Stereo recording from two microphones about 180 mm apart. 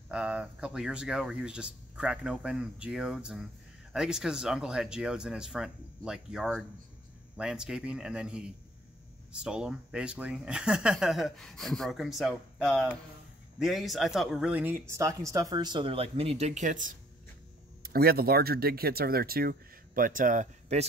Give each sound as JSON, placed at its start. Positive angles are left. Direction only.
{"t": 0.1, "sound": "speech", "side_deg": -5}
{"t": 17.8, "sound": "speech", "side_deg": -60}